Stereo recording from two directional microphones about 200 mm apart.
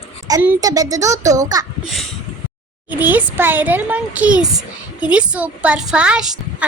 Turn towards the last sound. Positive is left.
turn(degrees=-5)  # may be behind; listen again after turning